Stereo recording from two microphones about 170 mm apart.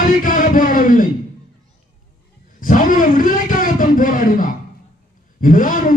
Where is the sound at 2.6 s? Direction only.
50° left (ahead or behind).